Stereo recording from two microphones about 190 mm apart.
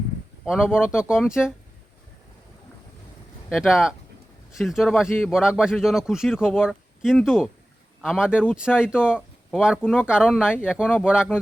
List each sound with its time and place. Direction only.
0.4 s a man's voice: 5° right (ahead or behind)
3.5 s a man's voice: centre (ahead or behind)
10.5 s speech: 10° left (ahead or behind)
10.8 s a man's voice: 5° right (ahead or behind)